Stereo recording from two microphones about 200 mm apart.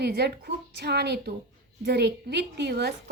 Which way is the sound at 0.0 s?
55° right (ahead or behind).